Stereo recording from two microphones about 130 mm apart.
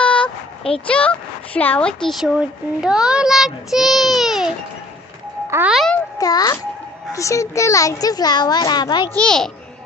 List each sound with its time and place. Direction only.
0.0 s a sound: 10° left (ahead or behind)
0.8 s a child's voice: 10° left (ahead or behind)
5.7 s a child's voice: centre (ahead or behind)
6.1 s a child's voice: 30° left (ahead or behind)
9.2 s a child's voice: 5° left (ahead or behind)